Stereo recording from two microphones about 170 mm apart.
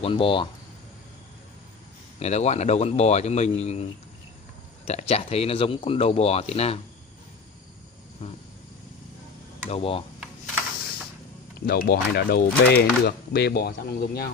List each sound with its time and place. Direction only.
0.0 s speech: 30° left (ahead or behind)
2.1 s speech: 40° left (ahead or behind)
4.8 s speech: 40° left (ahead or behind)
8.2 s speech: 35° left (ahead or behind)
9.7 s speech: 35° left (ahead or behind)
11.6 s speech: 65° left (ahead or behind)